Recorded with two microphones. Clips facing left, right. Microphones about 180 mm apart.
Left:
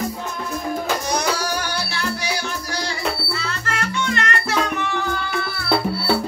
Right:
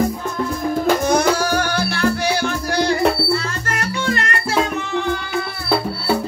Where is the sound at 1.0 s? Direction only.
50° right (ahead or behind); by 4.6 s 35° right (ahead or behind).